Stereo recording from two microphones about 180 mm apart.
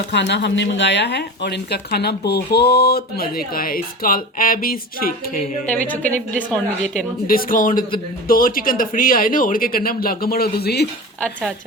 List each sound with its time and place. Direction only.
0.1 s speech: 70° left (ahead or behind); by 5.5 s 55° left (ahead or behind)
5.7 s a woman's voice: 10° left (ahead or behind)
7.3 s speech: 50° left (ahead or behind)